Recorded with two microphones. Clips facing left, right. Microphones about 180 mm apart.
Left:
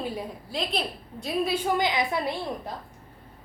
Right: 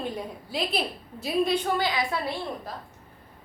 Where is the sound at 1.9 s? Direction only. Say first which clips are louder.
Left 2 dB; 20° left (ahead or behind).